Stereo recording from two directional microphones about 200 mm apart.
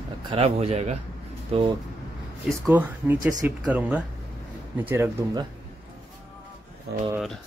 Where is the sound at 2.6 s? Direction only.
10° right (ahead or behind).